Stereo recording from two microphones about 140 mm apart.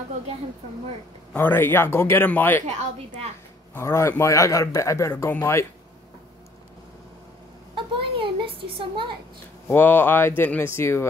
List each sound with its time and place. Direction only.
1.3 s speech: 15° left (ahead or behind)
3.7 s speech: 20° left (ahead or behind)
7.7 s a woman's voice: 35° right (ahead or behind)
9.7 s speech: 15° left (ahead or behind)